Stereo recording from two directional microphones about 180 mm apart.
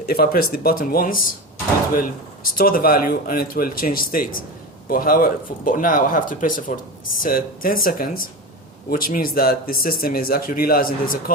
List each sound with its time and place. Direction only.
0.1 s speech: 55° left (ahead or behind)
2.6 s speech: 55° left (ahead or behind)